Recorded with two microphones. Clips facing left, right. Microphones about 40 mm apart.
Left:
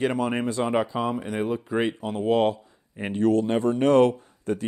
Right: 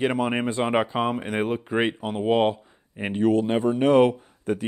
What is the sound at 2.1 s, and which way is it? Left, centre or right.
Speech, right.